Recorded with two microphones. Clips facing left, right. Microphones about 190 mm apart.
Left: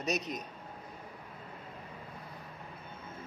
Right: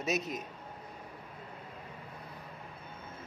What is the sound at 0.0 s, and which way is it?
Speech, 5° right (ahead or behind).